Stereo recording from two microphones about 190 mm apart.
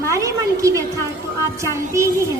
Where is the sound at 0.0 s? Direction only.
15° right (ahead or behind).